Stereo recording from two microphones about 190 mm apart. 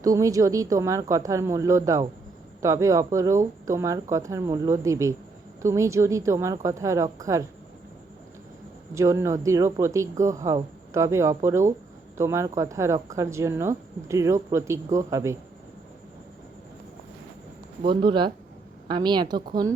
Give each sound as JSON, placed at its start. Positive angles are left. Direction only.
{"t": 0.0, "sound": "speech", "side_deg": -15}
{"t": 9.0, "sound": "speech", "side_deg": -15}
{"t": 17.8, "sound": "a woman's voice", "side_deg": -25}